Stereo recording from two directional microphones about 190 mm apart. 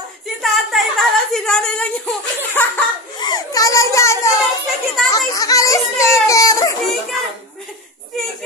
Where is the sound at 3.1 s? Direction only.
20° left (ahead or behind).